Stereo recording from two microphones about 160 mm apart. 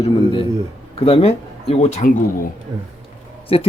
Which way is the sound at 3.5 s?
35° left (ahead or behind).